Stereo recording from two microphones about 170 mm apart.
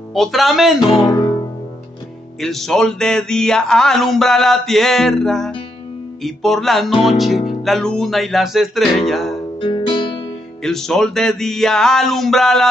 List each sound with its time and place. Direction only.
0.1 s music: centre (ahead or behind)
1.0 s music: 20° left (ahead or behind)
2.4 s music: centre (ahead or behind)
9.6 s music: 30° left (ahead or behind)
10.6 s music: 5° left (ahead or behind)